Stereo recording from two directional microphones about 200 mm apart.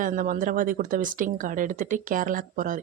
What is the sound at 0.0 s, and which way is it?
A woman's voice, 40° right (ahead or behind).